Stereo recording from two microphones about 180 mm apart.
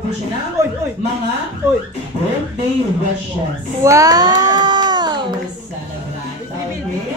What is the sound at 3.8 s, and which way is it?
Speech, 20° right (ahead or behind).